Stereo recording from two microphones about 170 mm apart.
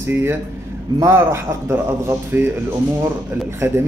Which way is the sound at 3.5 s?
15° right (ahead or behind).